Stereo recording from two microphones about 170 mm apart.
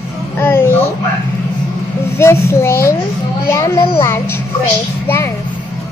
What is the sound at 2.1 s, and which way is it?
A woman's voice, 15° left (ahead or behind).